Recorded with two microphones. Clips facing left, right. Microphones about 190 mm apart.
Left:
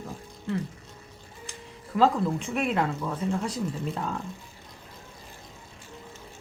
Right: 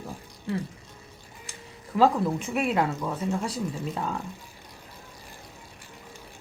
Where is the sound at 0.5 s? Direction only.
10° right (ahead or behind).